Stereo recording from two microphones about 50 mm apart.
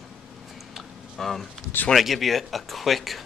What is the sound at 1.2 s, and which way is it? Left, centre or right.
Speech, centre.